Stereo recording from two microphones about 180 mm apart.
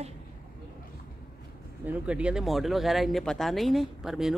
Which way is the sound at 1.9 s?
5° right (ahead or behind).